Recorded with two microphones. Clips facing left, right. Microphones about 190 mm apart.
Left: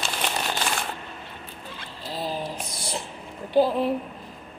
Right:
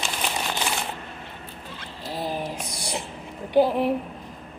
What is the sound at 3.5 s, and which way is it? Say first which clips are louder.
Speech: right 1 dB; 15° right (ahead or behind).